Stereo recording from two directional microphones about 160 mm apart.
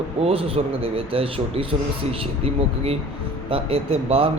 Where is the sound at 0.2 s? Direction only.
35° right (ahead or behind).